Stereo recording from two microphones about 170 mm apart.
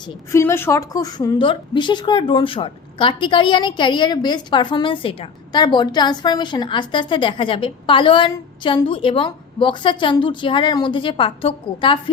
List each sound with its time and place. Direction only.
0.3 s a woman's voice: 15° left (ahead or behind)